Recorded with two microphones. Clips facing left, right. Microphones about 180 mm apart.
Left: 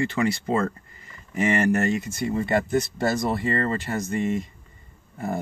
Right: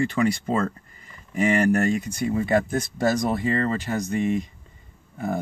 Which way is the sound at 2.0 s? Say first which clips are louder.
Right 1 dB; 5° left (ahead or behind).